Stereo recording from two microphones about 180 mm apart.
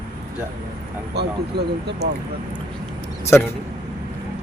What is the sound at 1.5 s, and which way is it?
Speech, 60° right (ahead or behind).